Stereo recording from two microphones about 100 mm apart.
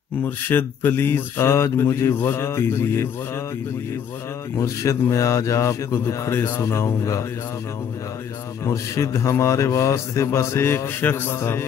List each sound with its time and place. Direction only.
0.2 s speech: 20° left (ahead or behind)
4.6 s a man's voice: 30° left (ahead or behind)
8.6 s speech: 30° left (ahead or behind)